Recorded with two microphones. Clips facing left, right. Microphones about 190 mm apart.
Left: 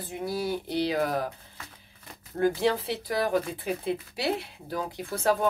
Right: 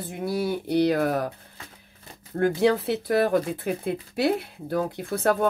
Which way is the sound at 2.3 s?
55° right (ahead or behind).